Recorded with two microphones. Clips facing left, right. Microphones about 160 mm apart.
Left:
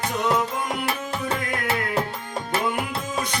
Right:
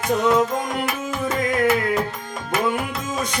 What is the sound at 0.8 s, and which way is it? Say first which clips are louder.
Music: right 2 dB; 30° left (ahead or behind).